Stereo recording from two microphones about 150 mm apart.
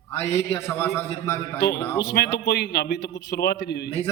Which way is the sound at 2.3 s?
90° left.